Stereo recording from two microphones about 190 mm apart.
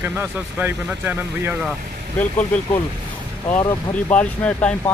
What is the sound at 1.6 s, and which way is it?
Speech, 5° left (ahead or behind).